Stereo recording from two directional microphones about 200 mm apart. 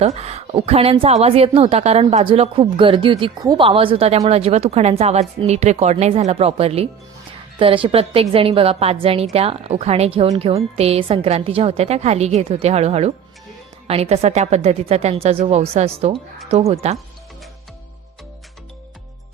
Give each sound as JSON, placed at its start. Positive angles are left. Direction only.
{"t": 0.0, "sound": "a woman's voice", "side_deg": -30}